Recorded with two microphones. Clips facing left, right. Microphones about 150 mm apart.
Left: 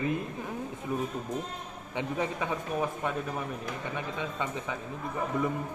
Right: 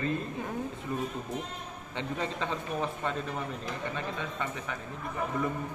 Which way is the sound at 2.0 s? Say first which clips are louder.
Left 2 dB; 10° left (ahead or behind).